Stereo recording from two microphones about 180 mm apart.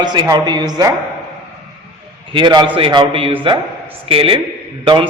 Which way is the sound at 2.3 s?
25° right (ahead or behind).